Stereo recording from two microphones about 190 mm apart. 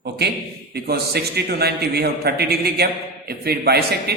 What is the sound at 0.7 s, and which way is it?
A man's voice, 55° right (ahead or behind).